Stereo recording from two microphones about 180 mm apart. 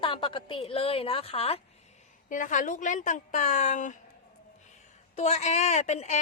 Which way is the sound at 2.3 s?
45° left (ahead or behind).